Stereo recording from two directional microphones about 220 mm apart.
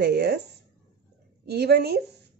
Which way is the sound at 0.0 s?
50° right (ahead or behind).